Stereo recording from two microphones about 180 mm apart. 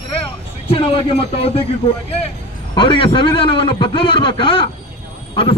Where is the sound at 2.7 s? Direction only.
30° left (ahead or behind).